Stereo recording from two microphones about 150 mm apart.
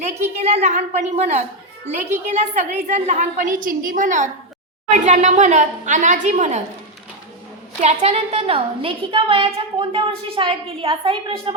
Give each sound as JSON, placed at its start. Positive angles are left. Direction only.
{"t": 0.3, "sound": "a woman's voice", "side_deg": -45}
{"t": 7.8, "sound": "a woman's voice", "side_deg": -45}